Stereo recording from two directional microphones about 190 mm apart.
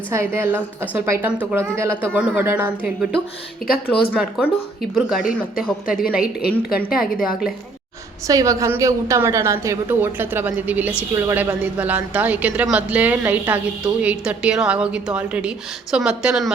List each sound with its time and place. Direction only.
0.1 s a woman's voice: 10° right (ahead or behind)
4.1 s speech: 5° right (ahead or behind)
6.4 s a woman's voice: 55° left (ahead or behind)
8.3 s a woman's voice: 15° right (ahead or behind)